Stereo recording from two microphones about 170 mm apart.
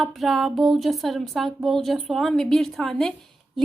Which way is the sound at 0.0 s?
Centre (ahead or behind).